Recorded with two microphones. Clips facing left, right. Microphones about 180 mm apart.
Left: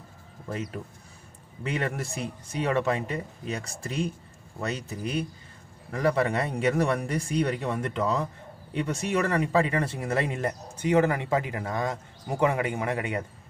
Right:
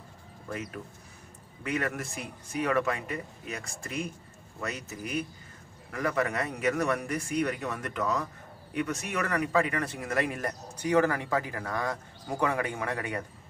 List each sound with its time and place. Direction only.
1.6 s speech: 25° left (ahead or behind)